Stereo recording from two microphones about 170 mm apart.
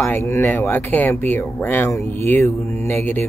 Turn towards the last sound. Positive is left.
turn(degrees=15)  # may be behind; listen again after turning